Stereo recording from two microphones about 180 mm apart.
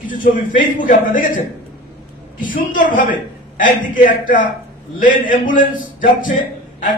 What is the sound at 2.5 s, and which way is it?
Speech, 50° left (ahead or behind).